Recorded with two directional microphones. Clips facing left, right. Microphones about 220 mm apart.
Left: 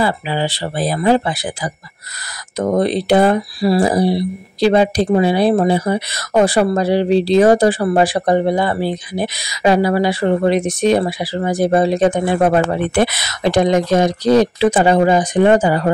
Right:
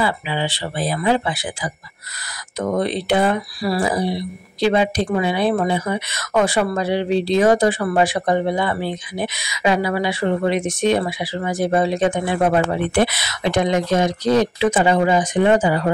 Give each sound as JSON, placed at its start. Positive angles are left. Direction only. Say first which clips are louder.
{"t": 0.0, "sound": "speech", "louder": "left 4 dB", "side_deg": 40}